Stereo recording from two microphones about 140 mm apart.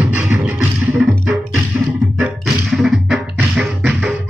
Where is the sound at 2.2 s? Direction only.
5° right (ahead or behind).